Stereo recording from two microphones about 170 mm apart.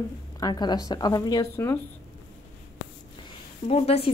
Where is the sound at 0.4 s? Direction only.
25° left (ahead or behind).